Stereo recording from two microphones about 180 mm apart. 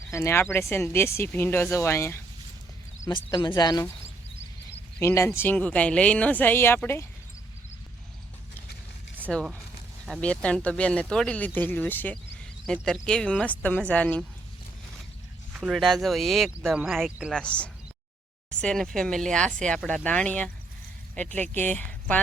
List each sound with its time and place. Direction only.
0.1 s speech: 15° left (ahead or behind)
3.2 s speech: 20° left (ahead or behind)
4.9 s speech: 15° left (ahead or behind)
9.3 s speech: 5° left (ahead or behind)
15.5 s speech: 5° right (ahead or behind)
21.5 s speech: 10° left (ahead or behind)